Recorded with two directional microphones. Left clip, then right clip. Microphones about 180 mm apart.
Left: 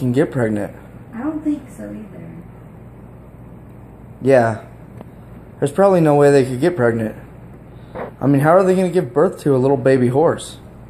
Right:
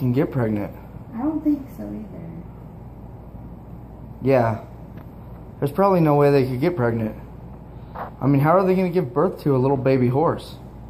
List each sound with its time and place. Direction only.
0.0 s speech: 30° left (ahead or behind)
4.2 s speech: 30° left (ahead or behind)
5.6 s speech: 35° left (ahead or behind)
8.2 s speech: 35° left (ahead or behind)